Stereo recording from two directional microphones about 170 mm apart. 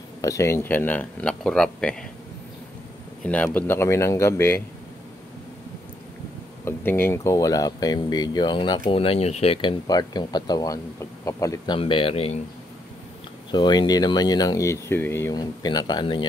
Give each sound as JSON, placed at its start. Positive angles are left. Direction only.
{"t": 0.2, "sound": "speech", "side_deg": 15}
{"t": 3.3, "sound": "speech", "side_deg": 10}
{"t": 6.6, "sound": "speech", "side_deg": 10}
{"t": 13.5, "sound": "speech", "side_deg": 25}